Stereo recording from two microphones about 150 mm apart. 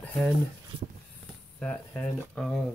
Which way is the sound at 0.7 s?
40° right (ahead or behind).